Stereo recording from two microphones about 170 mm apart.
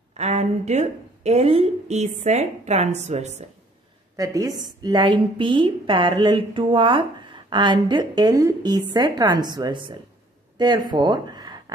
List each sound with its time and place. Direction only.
0.2 s a woman's voice: 40° right (ahead or behind)
4.2 s speech: 20° right (ahead or behind)